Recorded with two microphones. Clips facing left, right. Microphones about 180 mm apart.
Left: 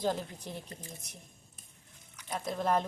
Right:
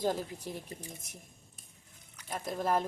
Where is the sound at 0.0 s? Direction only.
10° right (ahead or behind).